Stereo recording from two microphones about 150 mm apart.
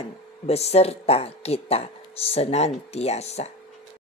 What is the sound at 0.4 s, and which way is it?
A woman's voice, 45° left (ahead or behind).